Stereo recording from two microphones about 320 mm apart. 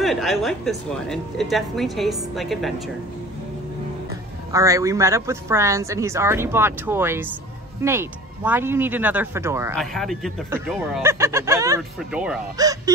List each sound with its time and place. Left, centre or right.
0.0 s speech: centre
4.5 s speech: centre